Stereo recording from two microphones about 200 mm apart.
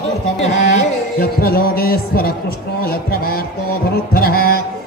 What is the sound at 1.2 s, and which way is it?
Music, 50° left (ahead or behind).